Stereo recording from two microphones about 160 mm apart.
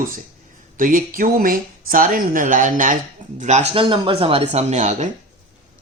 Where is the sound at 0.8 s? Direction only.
60° right (ahead or behind).